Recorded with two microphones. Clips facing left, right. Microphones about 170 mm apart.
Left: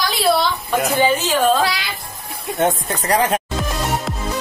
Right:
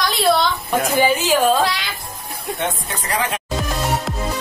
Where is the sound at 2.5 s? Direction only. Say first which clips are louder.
Left 8 dB; 40° left (ahead or behind).